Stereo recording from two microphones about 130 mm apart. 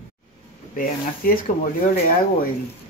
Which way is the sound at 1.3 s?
90° left.